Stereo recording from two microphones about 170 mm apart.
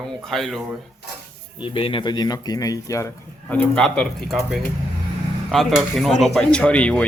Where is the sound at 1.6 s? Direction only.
30° left (ahead or behind).